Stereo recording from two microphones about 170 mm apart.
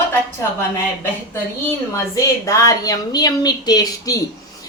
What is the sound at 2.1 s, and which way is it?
A woman's voice, 15° left (ahead or behind).